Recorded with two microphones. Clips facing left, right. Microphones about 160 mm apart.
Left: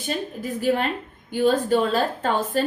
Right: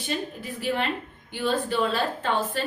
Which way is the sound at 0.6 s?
45° left (ahead or behind).